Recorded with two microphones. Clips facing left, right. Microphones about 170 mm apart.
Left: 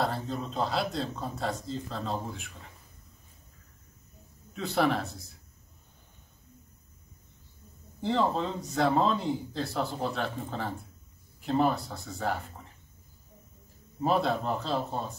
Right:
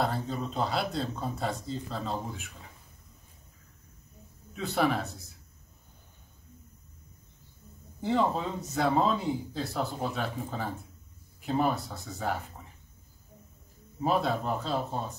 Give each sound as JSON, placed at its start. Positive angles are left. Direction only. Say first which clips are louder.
{"t": 0.0, "sound": "speech", "louder": "even", "side_deg": 0}
{"t": 4.6, "sound": "speech", "louder": "left 1 dB", "side_deg": 0}
{"t": 8.0, "sound": "speech", "louder": "even", "side_deg": -5}
{"t": 14.0, "sound": "speech", "louder": "left 1 dB", "side_deg": 0}